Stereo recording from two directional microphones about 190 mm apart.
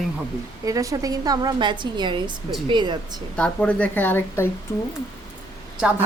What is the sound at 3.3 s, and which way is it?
Speech, 5° left (ahead or behind).